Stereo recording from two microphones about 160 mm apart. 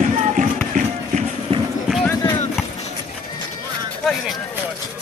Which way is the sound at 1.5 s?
35° right (ahead or behind).